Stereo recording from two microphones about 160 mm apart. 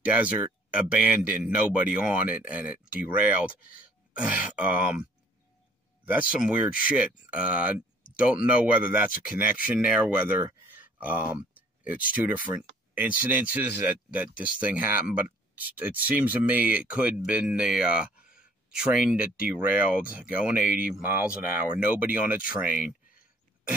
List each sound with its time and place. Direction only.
0.7 s speech: 10° right (ahead or behind)
6.0 s speech: 10° right (ahead or behind)
9.1 s speech: 60° left (ahead or behind)
9.6 s speech: 10° right (ahead or behind)